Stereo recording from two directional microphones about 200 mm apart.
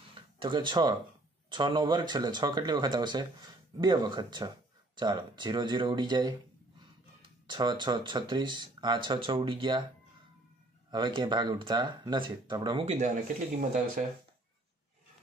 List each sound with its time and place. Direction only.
0.4 s speech: 25° right (ahead or behind)
7.4 s speech: 20° right (ahead or behind)
10.9 s speech: 25° right (ahead or behind)
12.8 s speech: 40° right (ahead or behind)